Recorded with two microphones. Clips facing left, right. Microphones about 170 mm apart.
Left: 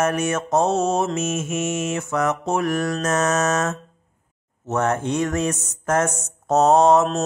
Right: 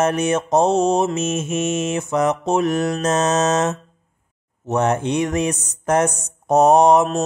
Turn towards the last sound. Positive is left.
turn(degrees=-15)  # may be behind; listen again after turning